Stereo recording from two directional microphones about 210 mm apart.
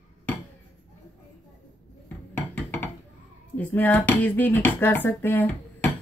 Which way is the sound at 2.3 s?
10° left (ahead or behind).